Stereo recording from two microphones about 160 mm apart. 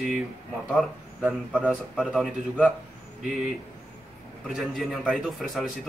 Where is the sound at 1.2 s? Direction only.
5° right (ahead or behind).